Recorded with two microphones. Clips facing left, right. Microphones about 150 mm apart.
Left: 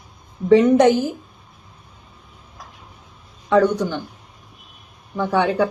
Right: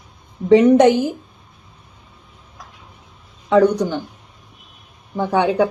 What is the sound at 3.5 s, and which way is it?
Speech, 15° right (ahead or behind).